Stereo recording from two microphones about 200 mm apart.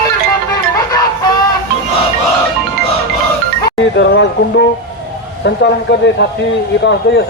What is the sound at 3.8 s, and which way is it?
Speech, 60° left (ahead or behind).